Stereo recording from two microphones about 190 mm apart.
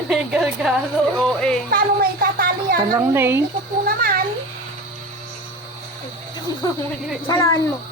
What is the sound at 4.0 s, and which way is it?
Cat, 50° right (ahead or behind).